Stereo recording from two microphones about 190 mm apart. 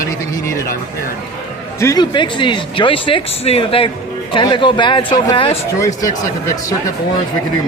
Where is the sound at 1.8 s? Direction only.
20° left (ahead or behind).